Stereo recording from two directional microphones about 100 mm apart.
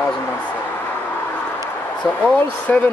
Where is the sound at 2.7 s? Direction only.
15° left (ahead or behind).